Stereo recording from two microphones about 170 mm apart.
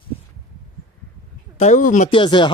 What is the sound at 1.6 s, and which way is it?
Speech, 45° left (ahead or behind).